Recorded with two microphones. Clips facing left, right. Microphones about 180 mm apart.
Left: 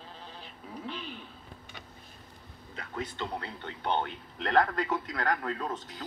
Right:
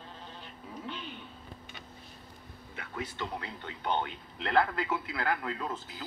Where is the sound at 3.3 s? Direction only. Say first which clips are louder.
Left 2 dB; 30° left (ahead or behind).